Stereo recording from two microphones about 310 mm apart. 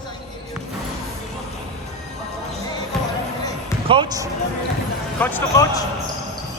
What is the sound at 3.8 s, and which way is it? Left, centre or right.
Speech, centre.